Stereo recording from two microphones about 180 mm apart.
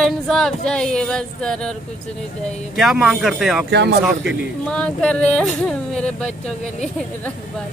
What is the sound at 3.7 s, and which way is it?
Speech, 70° right (ahead or behind).